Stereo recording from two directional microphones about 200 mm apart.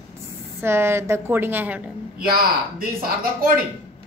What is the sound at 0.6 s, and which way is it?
A woman's voice, 10° right (ahead or behind).